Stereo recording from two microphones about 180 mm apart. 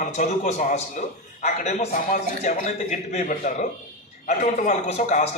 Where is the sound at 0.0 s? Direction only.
40° left (ahead or behind).